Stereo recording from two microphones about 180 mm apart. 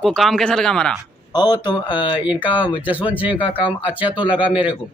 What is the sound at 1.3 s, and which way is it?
Speech, 25° left (ahead or behind).